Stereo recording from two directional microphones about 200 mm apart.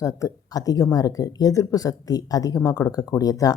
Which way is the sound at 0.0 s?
15° left (ahead or behind).